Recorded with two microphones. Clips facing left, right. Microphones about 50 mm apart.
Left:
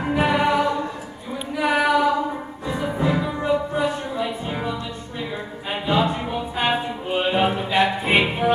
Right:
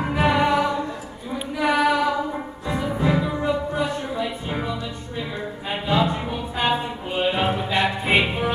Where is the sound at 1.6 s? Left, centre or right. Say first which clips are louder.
Left 1 dB; centre.